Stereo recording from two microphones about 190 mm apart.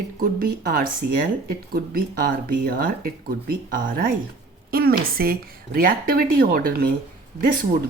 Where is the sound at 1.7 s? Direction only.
50° right (ahead or behind).